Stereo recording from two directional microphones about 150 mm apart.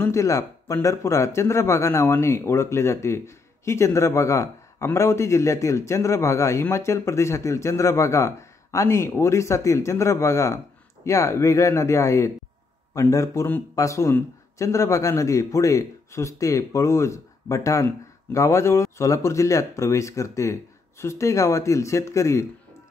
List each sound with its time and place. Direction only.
0.0 s speech: 20° left (ahead or behind)